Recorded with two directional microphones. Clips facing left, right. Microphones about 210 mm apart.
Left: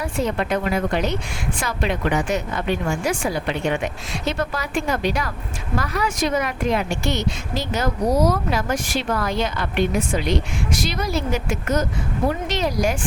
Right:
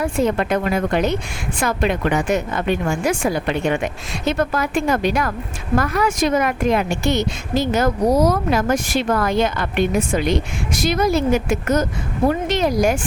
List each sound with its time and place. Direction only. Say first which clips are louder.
0.2 s speech: right 3 dB; 50° right (ahead or behind)
10.8 s speech: right 10 dB; 50° right (ahead or behind)